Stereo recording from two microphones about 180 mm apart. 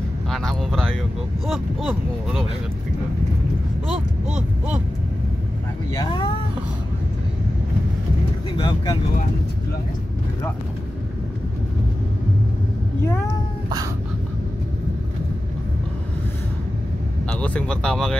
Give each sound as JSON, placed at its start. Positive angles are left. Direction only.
{"t": 0.3, "sound": "speech", "side_deg": 0}
{"t": 3.8, "sound": "speech", "side_deg": -5}
{"t": 5.9, "sound": "speech", "side_deg": 25}
{"t": 8.5, "sound": "speech", "side_deg": 25}
{"t": 17.3, "sound": "speech", "side_deg": 5}